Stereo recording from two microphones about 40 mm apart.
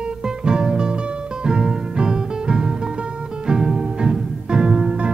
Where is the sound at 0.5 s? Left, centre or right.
Centre.